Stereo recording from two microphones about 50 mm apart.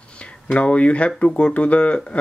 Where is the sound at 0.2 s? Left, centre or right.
Left.